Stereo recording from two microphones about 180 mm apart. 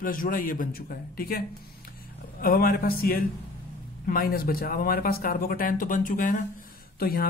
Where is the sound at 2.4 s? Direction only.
55° left (ahead or behind).